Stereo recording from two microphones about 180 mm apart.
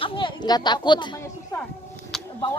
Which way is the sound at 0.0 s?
30° left (ahead or behind).